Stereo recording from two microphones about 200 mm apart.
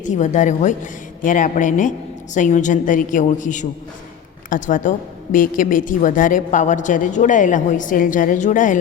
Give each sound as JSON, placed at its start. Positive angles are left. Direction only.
{"t": 0.0, "sound": "a woman's voice", "side_deg": 40}